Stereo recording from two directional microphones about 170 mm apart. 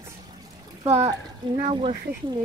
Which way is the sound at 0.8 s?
20° right (ahead or behind).